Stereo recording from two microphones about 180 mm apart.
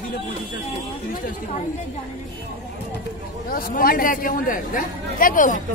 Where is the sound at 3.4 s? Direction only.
55° left (ahead or behind).